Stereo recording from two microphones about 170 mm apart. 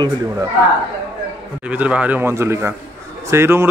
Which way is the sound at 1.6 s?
10° right (ahead or behind).